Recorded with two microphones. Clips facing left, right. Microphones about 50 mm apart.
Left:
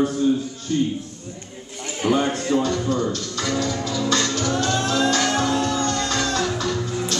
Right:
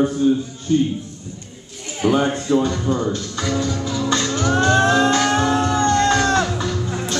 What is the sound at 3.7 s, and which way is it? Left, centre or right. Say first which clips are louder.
Music: right 1 dB; centre.